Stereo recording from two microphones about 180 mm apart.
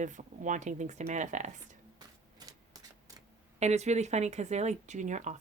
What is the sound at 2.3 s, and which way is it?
Typewriter, 20° right (ahead or behind).